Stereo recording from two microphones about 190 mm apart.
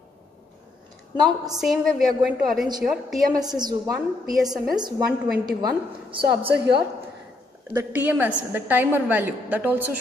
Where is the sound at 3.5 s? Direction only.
20° right (ahead or behind).